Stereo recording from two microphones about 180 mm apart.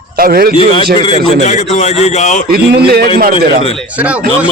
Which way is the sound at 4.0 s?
10° right (ahead or behind).